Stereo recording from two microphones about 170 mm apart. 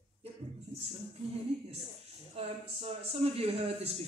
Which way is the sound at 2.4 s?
35° right (ahead or behind).